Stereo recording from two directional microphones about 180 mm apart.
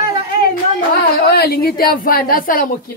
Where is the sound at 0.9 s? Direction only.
60° left (ahead or behind).